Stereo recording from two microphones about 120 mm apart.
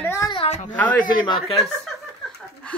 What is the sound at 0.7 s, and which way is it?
Speech, 10° left (ahead or behind).